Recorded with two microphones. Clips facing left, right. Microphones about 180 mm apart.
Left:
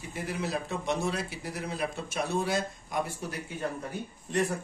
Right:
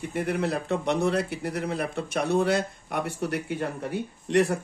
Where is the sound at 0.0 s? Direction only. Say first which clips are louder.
Right 7 dB; 60° right (ahead or behind).